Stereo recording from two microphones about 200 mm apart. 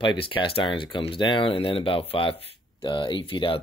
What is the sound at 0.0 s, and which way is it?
Speech, 25° left (ahead or behind).